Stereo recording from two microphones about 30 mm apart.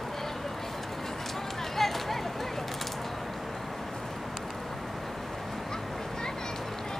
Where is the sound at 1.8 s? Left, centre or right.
Centre.